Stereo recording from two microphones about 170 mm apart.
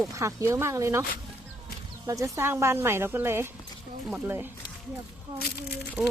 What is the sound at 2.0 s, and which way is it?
Speech, 20° right (ahead or behind).